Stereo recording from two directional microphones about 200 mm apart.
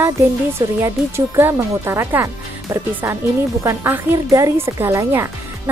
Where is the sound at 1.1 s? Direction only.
10° right (ahead or behind).